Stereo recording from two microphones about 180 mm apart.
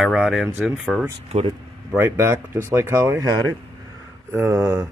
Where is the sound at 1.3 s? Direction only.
30° right (ahead or behind).